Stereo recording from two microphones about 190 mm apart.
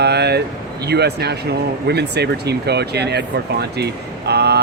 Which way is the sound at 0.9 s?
60° right (ahead or behind).